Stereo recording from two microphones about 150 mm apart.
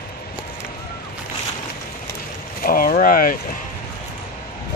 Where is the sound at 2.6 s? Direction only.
75° left (ahead or behind).